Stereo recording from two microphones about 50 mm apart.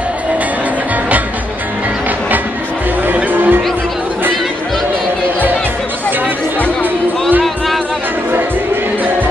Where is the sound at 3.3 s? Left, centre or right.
Right.